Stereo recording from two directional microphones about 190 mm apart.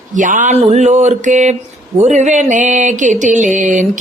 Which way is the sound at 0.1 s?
40° right (ahead or behind).